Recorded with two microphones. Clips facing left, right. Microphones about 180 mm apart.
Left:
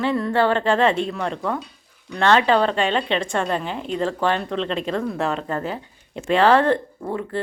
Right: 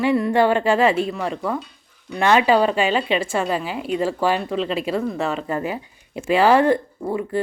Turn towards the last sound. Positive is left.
turn(degrees=-10)  # may be behind; listen again after turning